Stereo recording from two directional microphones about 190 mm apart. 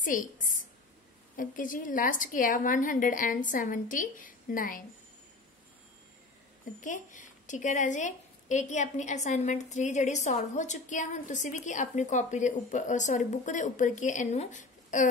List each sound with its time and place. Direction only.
0.0 s a woman's voice: 45° left (ahead or behind)
6.8 s a woman's voice: 40° left (ahead or behind)